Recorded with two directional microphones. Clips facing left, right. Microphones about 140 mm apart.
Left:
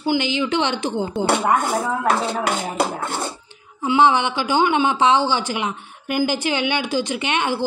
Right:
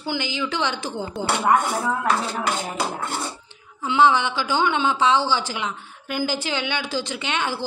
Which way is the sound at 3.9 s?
15° left (ahead or behind).